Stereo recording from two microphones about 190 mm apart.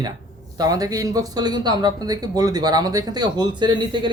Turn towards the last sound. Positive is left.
turn(degrees=-25)  # may be behind; listen again after turning